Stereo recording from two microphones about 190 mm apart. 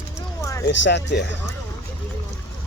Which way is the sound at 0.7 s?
70° left (ahead or behind).